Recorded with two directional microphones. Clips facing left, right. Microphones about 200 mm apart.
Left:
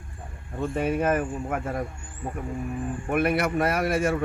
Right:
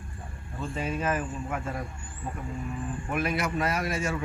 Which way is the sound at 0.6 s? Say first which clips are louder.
Left 6 dB; 60° left (ahead or behind).